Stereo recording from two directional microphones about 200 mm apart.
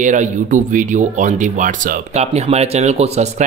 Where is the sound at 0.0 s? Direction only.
40° right (ahead or behind).